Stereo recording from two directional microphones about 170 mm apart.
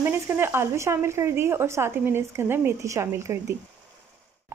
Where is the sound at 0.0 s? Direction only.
15° right (ahead or behind).